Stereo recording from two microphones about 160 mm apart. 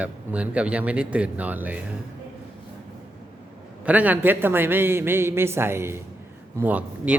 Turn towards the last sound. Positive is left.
turn(degrees=-10)  # may be behind; listen again after turning